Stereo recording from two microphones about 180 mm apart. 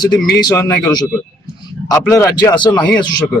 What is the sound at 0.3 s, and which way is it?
A man's voice, 20° left (ahead or behind).